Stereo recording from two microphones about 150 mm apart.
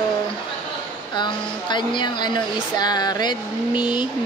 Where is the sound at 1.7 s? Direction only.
30° left (ahead or behind).